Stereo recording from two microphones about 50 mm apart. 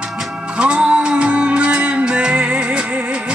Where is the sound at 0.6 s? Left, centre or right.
Right.